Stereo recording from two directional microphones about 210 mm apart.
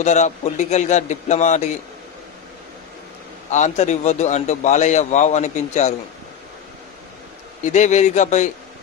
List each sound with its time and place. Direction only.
0.0 s a man's voice: 35° left (ahead or behind)
3.4 s a man's voice: 35° left (ahead or behind)
7.6 s a man's voice: 35° left (ahead or behind)